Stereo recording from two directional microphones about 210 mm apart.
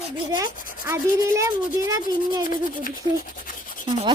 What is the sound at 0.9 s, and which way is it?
Speech, 15° right (ahead or behind).